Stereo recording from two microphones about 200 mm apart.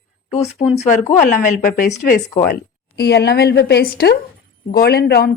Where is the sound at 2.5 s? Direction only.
50° left (ahead or behind).